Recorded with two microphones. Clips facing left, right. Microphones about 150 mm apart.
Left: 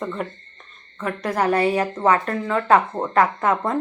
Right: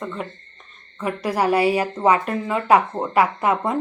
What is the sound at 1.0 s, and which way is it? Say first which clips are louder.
A woman's voice: right 1 dB; 10° right (ahead or behind).